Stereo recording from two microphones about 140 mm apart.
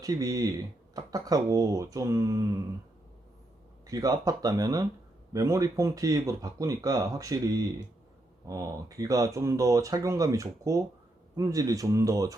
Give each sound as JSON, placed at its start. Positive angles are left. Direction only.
{"t": 0.0, "sound": "speech", "side_deg": -25}
{"t": 3.8, "sound": "speech", "side_deg": -25}